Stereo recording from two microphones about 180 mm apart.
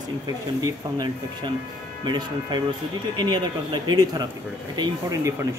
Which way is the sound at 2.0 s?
25° right (ahead or behind).